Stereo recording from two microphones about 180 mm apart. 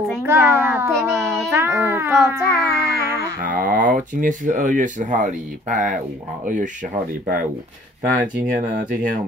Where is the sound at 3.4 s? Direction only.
50° right (ahead or behind).